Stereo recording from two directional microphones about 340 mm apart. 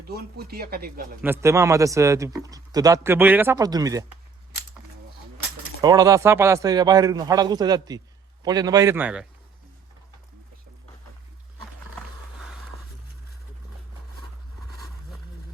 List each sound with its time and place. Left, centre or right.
0.1 s speech: right
1.2 s speech: centre
5.8 s speech: centre